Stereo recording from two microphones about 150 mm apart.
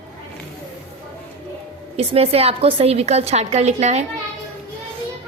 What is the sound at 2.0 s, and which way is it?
A woman's voice, 45° right (ahead or behind).